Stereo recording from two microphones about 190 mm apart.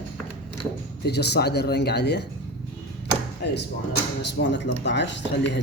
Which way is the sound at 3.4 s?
60° left (ahead or behind).